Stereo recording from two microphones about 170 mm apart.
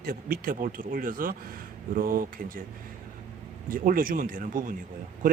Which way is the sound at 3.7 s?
55° right (ahead or behind).